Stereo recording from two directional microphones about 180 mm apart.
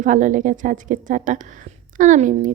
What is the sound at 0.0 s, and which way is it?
A woman's voice, 45° right (ahead or behind).